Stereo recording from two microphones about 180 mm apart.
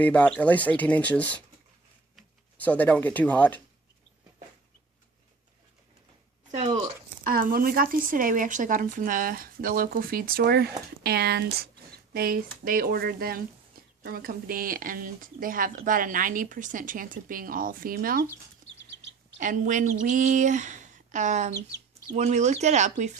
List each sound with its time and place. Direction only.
0.0 s speech: 5° left (ahead or behind)
7.3 s speech: 55° right (ahead or behind)
19.4 s speech: 45° right (ahead or behind)